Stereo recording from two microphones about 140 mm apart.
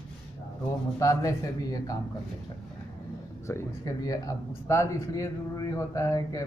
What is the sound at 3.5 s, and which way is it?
Speech, 25° left (ahead or behind).